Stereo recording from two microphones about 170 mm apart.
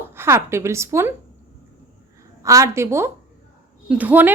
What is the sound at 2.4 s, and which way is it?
A woman's voice, 20° right (ahead or behind).